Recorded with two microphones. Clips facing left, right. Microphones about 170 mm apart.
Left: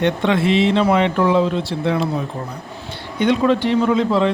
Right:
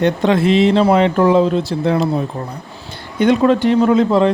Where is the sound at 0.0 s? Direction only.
40° right (ahead or behind).